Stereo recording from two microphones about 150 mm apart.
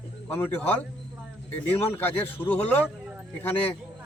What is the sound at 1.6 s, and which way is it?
Speech, 10° left (ahead or behind).